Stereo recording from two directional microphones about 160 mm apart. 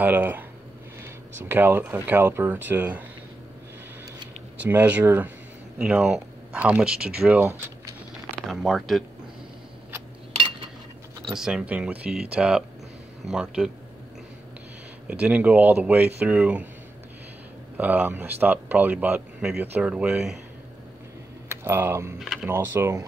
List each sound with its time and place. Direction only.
0.0 s speech: 10° right (ahead or behind)
4.6 s speech: 10° right (ahead or behind)
8.4 s speech: centre (ahead or behind)
11.2 s speech: 5° right (ahead or behind)
15.0 s speech: 10° right (ahead or behind)
17.7 s speech: 10° right (ahead or behind)
21.5 s speech: 15° right (ahead or behind)
22.2 s speech: centre (ahead or behind)
22.5 s speech: 15° right (ahead or behind)